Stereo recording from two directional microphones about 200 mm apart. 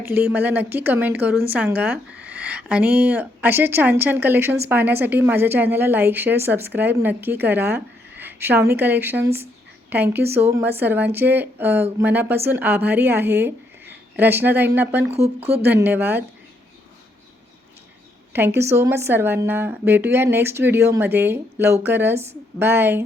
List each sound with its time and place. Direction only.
0.0 s a woman's voice: 10° right (ahead or behind)
15.1 s speech: 30° right (ahead or behind)
15.4 s a woman's voice: 10° right (ahead or behind)
18.3 s a woman's voice: 10° right (ahead or behind)